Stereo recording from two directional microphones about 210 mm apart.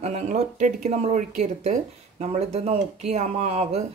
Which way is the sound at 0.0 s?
30° right (ahead or behind).